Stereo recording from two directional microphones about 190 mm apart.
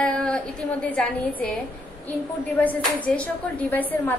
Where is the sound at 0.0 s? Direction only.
5° left (ahead or behind).